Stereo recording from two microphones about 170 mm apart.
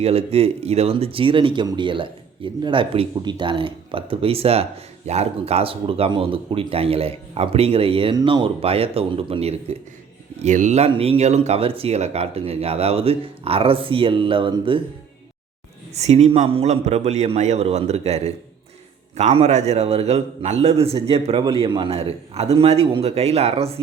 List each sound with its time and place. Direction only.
0.0 s speech: 35° right (ahead or behind)
15.9 s speech: 40° right (ahead or behind)